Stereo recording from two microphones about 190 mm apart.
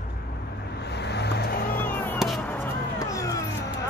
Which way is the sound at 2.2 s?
5° left (ahead or behind).